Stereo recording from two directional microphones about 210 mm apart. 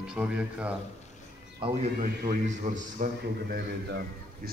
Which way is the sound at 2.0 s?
45° right (ahead or behind).